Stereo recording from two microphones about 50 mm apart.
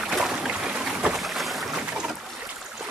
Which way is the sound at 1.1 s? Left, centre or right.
Centre.